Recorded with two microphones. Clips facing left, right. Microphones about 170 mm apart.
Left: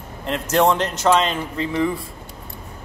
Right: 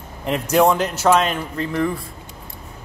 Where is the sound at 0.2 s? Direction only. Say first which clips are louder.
Right 2 dB; 15° right (ahead or behind).